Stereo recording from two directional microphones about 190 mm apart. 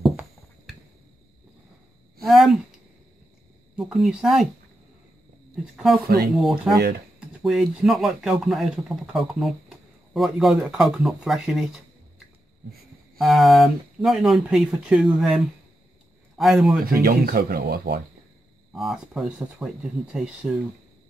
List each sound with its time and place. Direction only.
0.0 s a sound: 5° right (ahead or behind)
2.2 s speech: centre (ahead or behind)
6.0 s speech: 55° right (ahead or behind)
6.4 s speech: 5° right (ahead or behind)
13.2 s speech: centre (ahead or behind)
16.8 s speech: 50° right (ahead or behind)
18.7 s speech: centre (ahead or behind)